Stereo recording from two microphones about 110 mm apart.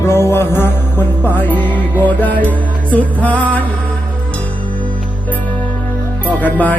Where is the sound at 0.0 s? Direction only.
25° left (ahead or behind).